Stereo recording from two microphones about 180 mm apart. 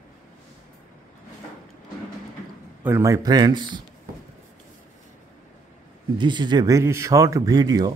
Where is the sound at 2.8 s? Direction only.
15° right (ahead or behind).